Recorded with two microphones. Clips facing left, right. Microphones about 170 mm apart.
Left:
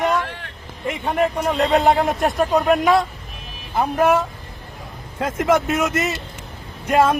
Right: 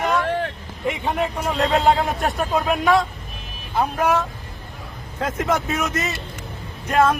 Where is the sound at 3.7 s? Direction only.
10° left (ahead or behind).